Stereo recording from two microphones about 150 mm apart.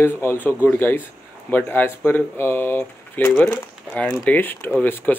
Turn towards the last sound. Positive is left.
turn(degrees=10)  # may be behind; listen again after turning